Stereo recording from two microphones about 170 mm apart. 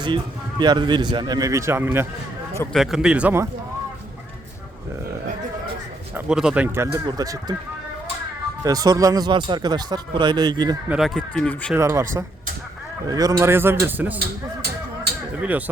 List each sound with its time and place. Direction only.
0.6 s speech: 25° right (ahead or behind)
2.7 s speech: centre (ahead or behind)
6.1 s a man's voice: 5° right (ahead or behind)
6.8 s speech: 20° right (ahead or behind)
8.6 s speech: 20° right (ahead or behind)
10.8 s speech: 5° right (ahead or behind)
11.7 s a man's voice: 15° right (ahead or behind)
15.4 s a man's voice: 10° right (ahead or behind)